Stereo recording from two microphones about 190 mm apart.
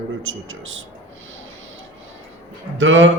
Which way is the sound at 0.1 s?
85° right.